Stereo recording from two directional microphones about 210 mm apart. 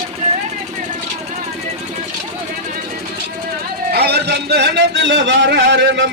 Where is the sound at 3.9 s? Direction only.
50° right (ahead or behind).